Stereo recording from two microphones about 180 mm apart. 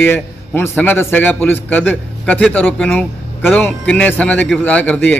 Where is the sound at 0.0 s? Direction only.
10° left (ahead or behind).